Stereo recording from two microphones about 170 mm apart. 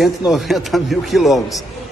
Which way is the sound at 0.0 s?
Centre (ahead or behind).